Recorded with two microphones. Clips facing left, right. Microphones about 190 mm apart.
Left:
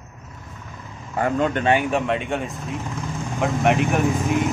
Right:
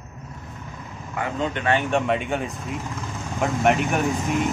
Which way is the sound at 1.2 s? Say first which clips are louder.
Left 6 dB; 30° left (ahead or behind).